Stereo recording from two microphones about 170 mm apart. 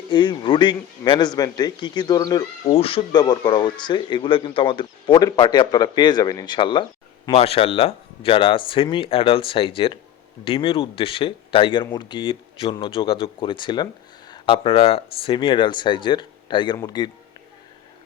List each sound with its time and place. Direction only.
0.1 s speech: 25° left (ahead or behind)